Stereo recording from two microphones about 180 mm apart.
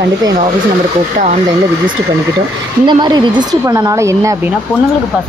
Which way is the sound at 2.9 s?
25° right (ahead or behind).